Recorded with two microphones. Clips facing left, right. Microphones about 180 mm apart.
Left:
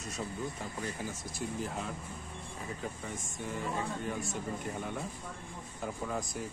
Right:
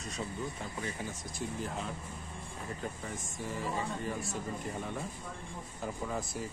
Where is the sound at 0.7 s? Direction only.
5° left (ahead or behind).